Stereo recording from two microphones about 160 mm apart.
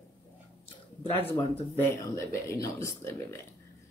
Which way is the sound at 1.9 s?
20° left (ahead or behind).